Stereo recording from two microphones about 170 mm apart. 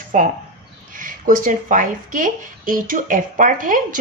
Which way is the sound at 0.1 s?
50° right (ahead or behind).